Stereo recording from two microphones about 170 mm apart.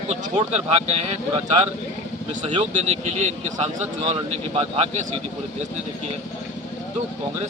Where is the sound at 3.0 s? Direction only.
45° right (ahead or behind).